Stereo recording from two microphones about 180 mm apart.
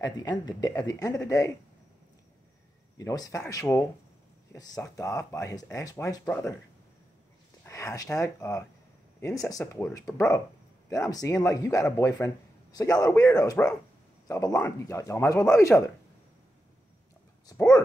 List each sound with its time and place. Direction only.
0.0 s speech: 20° left (ahead or behind)
3.0 s speech: 20° left (ahead or behind)
7.6 s speech: 15° left (ahead or behind)